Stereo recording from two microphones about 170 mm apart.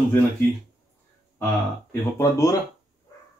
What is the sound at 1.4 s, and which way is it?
Speech, 15° left (ahead or behind).